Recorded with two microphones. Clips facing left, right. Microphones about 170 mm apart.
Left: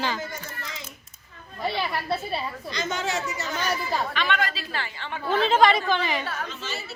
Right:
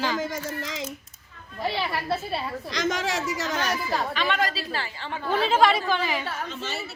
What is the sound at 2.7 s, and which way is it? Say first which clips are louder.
Speech: right 2 dB; 90° right.